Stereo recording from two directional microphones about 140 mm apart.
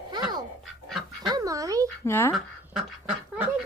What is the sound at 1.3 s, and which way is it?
Dog, 25° right (ahead or behind).